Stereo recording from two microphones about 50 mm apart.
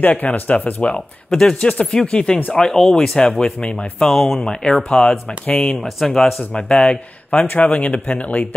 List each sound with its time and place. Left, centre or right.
0.0 s speech: left
1.3 s speech: centre
2.0 s speech: left
2.5 s speech: centre
4.1 s speech: centre
5.1 s speech: left
5.8 s speech: centre
6.5 s speech: centre
7.4 s speech: left